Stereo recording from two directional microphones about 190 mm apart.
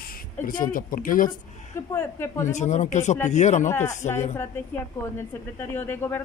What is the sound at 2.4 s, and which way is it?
Speech, 40° left (ahead or behind).